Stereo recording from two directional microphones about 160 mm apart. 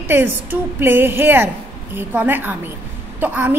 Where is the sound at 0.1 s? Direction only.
15° right (ahead or behind).